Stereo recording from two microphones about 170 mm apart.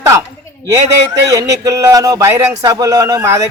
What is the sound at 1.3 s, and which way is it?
Speech, 20° right (ahead or behind).